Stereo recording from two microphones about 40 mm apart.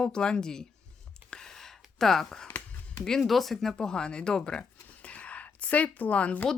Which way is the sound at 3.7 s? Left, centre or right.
Centre.